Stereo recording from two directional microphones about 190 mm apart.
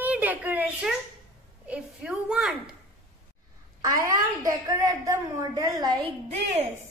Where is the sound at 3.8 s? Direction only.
20° right (ahead or behind).